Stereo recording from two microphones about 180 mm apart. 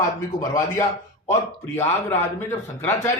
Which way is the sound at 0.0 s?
20° left (ahead or behind).